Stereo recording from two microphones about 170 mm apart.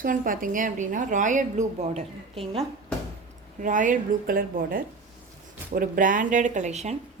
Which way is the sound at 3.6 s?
50° right (ahead or behind).